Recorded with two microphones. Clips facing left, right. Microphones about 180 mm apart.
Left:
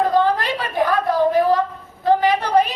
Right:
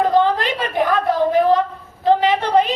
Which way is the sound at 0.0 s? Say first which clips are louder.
Right 1 dB; 20° right (ahead or behind).